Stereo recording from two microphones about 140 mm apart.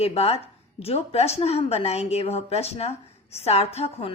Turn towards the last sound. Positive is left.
turn(degrees=45)  # may be behind; listen again after turning